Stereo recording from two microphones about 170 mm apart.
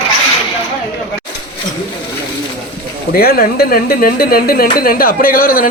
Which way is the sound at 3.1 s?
65° left (ahead or behind).